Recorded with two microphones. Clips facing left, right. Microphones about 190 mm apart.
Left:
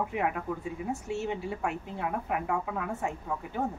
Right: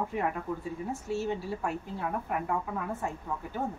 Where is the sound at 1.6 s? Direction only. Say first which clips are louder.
Left 1 dB; 65° left (ahead or behind).